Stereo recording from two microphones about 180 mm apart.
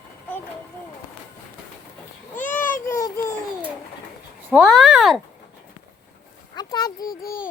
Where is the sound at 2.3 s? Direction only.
45° left (ahead or behind).